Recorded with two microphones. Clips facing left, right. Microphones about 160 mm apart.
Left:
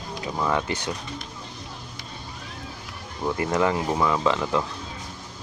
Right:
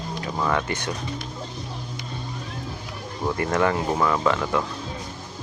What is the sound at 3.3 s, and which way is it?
Speech, 20° left (ahead or behind).